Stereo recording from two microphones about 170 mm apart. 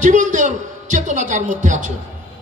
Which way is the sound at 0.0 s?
45° right (ahead or behind).